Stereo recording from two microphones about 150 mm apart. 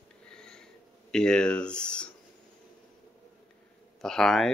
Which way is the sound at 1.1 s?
5° left (ahead or behind).